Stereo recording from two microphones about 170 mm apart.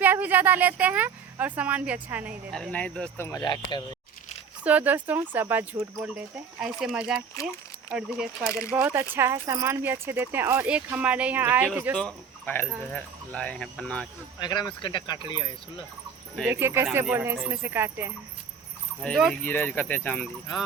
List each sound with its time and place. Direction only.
0.0 s speech: 10° right (ahead or behind)
2.5 s speech: 5° left (ahead or behind)
3.2 s speech: 15° left (ahead or behind)
4.6 s speech: 10° right (ahead or behind)
11.9 s speech: 5° left (ahead or behind)
14.3 s speech: 25° left (ahead or behind)
16.5 s speech: 15° right (ahead or behind)
19.0 s speech: 5° left (ahead or behind)